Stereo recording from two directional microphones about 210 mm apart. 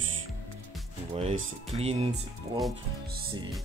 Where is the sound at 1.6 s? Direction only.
30° right (ahead or behind).